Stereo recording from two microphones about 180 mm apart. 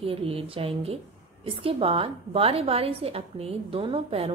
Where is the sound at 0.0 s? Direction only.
30° right (ahead or behind).